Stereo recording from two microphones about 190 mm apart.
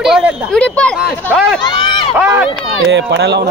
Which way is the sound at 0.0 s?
5° right (ahead or behind).